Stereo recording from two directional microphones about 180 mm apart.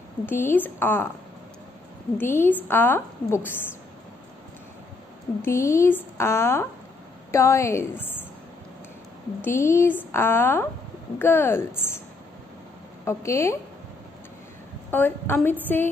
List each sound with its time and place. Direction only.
0.3 s a woman's voice: 10° left (ahead or behind)
2.1 s a woman's voice: 10° left (ahead or behind)
5.4 s a woman's voice: 15° left (ahead or behind)
9.4 s a woman's voice: 15° left (ahead or behind)
13.0 s a woman's voice: 15° left (ahead or behind)
14.9 s a woman's voice: 10° left (ahead or behind)